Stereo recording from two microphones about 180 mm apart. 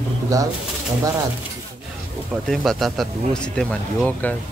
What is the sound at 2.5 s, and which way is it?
Speech, centre (ahead or behind).